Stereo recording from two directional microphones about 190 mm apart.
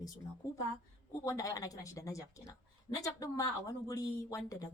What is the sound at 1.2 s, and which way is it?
A woman's voice, 15° left (ahead or behind).